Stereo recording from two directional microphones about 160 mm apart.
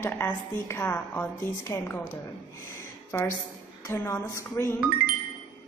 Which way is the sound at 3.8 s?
15° left (ahead or behind).